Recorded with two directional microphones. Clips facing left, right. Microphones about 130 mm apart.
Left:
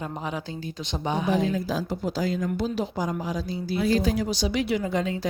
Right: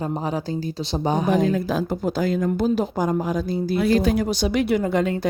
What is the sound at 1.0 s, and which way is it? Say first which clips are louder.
Speech: right 4 dB; 40° right (ahead or behind).